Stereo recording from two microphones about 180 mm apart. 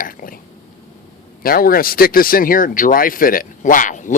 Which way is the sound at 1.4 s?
55° left (ahead or behind).